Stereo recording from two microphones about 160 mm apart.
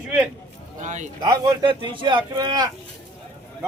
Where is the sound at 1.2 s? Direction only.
25° right (ahead or behind).